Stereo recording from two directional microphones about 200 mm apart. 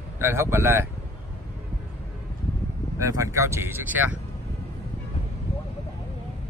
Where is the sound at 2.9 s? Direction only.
15° right (ahead or behind).